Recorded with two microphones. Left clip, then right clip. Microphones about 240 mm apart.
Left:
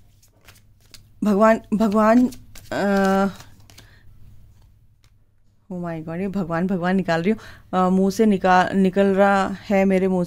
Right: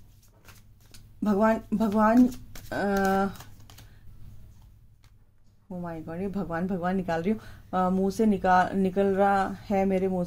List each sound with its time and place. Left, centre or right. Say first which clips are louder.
0.9 s speech: left 7 dB; left
5.7 s speech: left 7 dB; left